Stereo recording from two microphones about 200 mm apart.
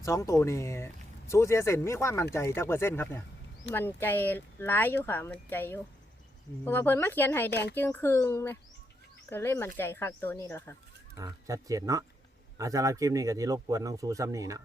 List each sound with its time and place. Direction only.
0.0 s speech: 15° left (ahead or behind)
7.5 s speech: 55° left (ahead or behind)
7.8 s speech: 10° left (ahead or behind)
11.2 s speech: 15° right (ahead or behind)